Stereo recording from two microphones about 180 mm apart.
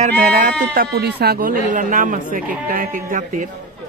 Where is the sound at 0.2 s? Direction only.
45° right (ahead or behind).